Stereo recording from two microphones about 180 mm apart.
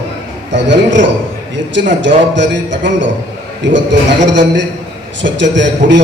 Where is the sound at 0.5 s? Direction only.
90° right.